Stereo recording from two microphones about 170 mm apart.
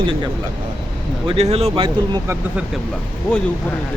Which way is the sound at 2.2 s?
15° right (ahead or behind).